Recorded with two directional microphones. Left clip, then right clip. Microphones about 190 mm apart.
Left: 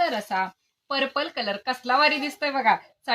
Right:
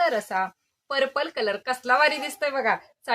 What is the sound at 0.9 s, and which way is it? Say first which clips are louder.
Speech: right 1 dB; 20° right (ahead or behind).